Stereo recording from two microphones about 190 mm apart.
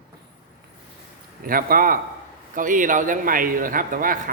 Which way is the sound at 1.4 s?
50° right (ahead or behind).